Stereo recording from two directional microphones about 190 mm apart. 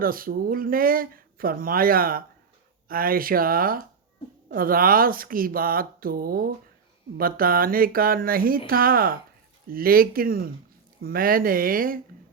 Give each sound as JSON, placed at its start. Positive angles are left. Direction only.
{"t": 0.0, "sound": "speech", "side_deg": -50}